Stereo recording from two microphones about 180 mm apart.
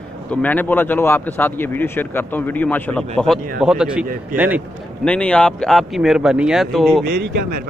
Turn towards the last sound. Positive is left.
turn(degrees=-60)  # may be behind; listen again after turning